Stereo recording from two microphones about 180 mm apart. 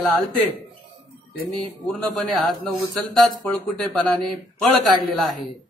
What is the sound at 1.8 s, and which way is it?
A man's voice, centre (ahead or behind).